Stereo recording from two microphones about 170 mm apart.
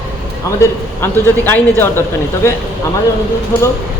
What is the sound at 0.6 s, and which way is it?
A man's voice, 10° left (ahead or behind).